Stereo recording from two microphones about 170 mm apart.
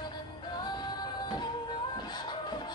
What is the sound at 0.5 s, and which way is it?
Music, 25° left (ahead or behind).